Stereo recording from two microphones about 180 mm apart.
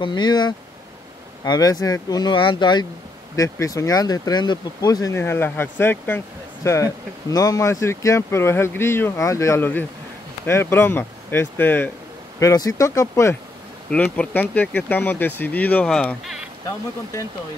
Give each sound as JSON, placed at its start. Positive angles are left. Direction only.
{"t": 0.0, "sound": "speech", "side_deg": 25}